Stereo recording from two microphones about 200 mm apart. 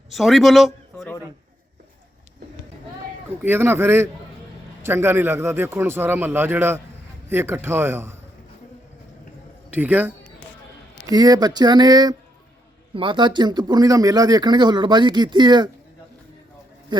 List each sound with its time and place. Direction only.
0.1 s speech: centre (ahead or behind)
3.4 s a man's voice: 10° right (ahead or behind)
9.7 s a man's voice: 10° right (ahead or behind)
16.9 s speech: 25° right (ahead or behind)